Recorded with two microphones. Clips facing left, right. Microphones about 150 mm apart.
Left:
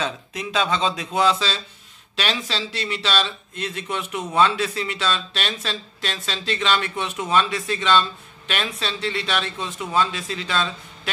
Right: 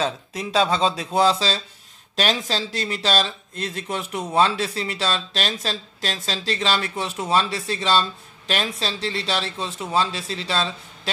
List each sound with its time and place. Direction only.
0.0 s speech: 35° right (ahead or behind)